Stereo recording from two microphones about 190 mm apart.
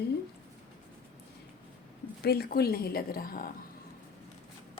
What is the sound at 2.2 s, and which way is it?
A woman's voice, 55° left (ahead or behind).